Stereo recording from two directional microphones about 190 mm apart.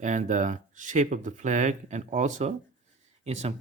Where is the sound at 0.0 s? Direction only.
40° right (ahead or behind).